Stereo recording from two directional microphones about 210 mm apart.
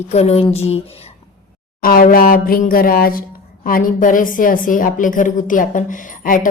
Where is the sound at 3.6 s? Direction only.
40° left (ahead or behind).